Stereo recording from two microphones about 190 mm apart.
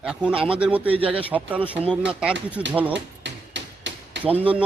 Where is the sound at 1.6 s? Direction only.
30° right (ahead or behind).